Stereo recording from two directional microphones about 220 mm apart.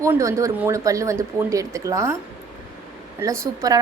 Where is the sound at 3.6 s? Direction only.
15° right (ahead or behind).